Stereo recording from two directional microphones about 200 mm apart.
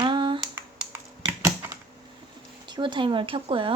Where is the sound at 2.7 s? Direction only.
25° right (ahead or behind).